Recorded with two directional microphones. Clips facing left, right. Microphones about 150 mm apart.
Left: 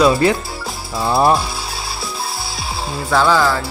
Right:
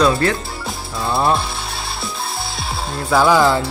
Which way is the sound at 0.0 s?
10° left (ahead or behind).